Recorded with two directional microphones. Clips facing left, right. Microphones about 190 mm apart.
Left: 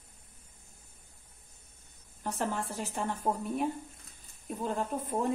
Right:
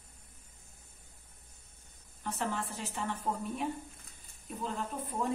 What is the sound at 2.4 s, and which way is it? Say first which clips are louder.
Speech: left 2 dB; 50° left (ahead or behind).